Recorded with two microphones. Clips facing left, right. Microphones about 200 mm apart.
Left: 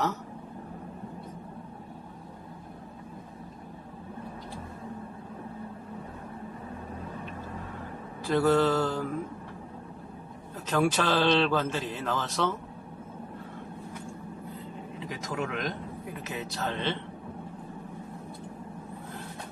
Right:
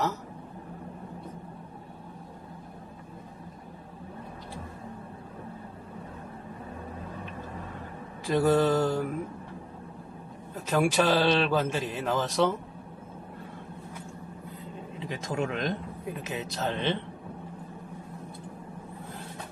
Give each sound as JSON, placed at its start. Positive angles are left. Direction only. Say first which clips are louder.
{"t": 8.3, "sound": "a man's voice", "louder": "even", "side_deg": -15}
{"t": 10.5, "sound": "a man's voice", "louder": "right 1 dB", "side_deg": -10}
{"t": 15.0, "sound": "a man's voice", "louder": "right 3 dB", "side_deg": -25}